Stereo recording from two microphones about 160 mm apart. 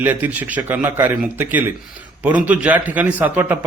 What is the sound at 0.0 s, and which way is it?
A man's voice, 10° right (ahead or behind).